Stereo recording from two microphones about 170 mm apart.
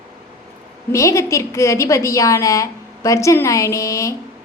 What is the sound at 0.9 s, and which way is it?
A woman's voice, 15° left (ahead or behind).